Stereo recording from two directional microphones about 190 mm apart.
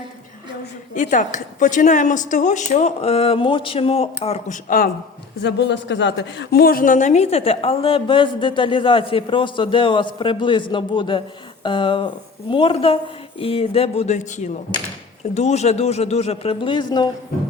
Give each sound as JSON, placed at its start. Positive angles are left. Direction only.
{"t": 0.9, "sound": "a woman's voice", "side_deg": 40}
{"t": 5.4, "sound": "a woman's voice", "side_deg": 65}